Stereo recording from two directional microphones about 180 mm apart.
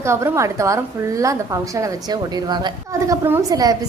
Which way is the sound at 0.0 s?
15° right (ahead or behind).